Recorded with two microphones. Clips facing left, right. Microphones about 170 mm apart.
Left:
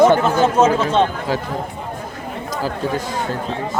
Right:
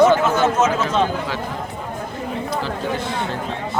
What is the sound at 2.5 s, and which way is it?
Speech, 40° left (ahead or behind).